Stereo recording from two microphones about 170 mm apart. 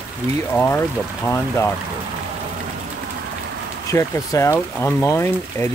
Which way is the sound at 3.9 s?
15° left (ahead or behind).